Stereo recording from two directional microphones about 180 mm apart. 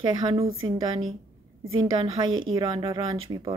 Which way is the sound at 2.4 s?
25° right (ahead or behind).